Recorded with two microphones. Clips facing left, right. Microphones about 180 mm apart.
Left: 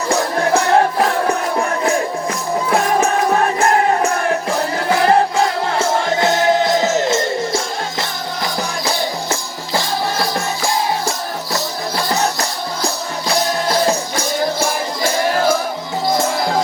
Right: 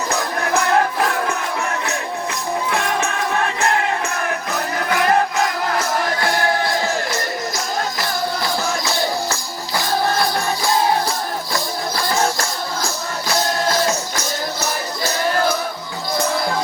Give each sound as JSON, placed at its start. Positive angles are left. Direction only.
{"t": 0.2, "sound": "music", "side_deg": 30}